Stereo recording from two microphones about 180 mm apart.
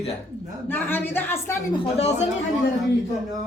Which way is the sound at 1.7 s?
35° left (ahead or behind).